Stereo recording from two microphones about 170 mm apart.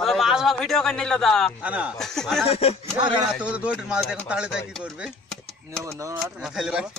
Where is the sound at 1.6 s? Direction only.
10° right (ahead or behind).